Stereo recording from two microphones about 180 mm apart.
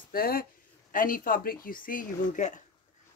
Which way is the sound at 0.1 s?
55° left (ahead or behind).